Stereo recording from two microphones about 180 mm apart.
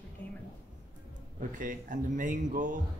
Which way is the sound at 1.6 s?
45° right (ahead or behind).